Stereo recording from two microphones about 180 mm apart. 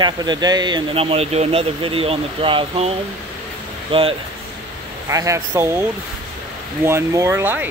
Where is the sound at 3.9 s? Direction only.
30° right (ahead or behind).